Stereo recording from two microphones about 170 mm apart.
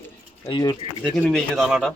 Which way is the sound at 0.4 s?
25° left (ahead or behind).